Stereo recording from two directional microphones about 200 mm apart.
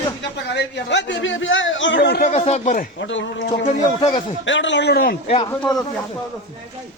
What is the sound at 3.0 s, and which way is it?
Speech, 65° left (ahead or behind).